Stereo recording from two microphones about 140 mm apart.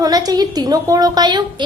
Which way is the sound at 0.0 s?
25° right (ahead or behind).